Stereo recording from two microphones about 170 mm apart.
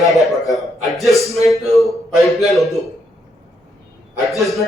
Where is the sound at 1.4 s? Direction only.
20° left (ahead or behind).